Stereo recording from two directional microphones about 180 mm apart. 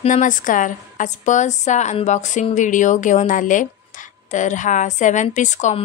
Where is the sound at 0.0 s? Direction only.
45° left (ahead or behind).